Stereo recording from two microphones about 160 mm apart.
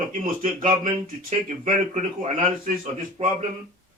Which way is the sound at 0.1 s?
60° right (ahead or behind).